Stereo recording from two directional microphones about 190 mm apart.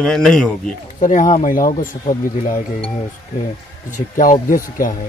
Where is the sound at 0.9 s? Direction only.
45° left (ahead or behind).